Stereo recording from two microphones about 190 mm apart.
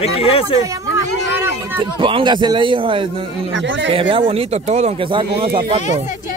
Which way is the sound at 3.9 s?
25° right (ahead or behind).